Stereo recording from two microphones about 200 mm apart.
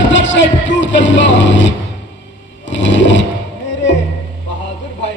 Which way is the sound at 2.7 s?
65° left (ahead or behind).